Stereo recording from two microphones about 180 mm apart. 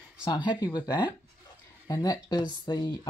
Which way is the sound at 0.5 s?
20° left (ahead or behind).